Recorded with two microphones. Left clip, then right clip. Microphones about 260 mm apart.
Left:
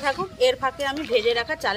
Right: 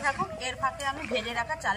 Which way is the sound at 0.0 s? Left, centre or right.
Left.